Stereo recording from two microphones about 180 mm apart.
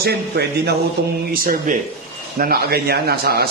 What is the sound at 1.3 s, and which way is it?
A man's voice, 50° right (ahead or behind).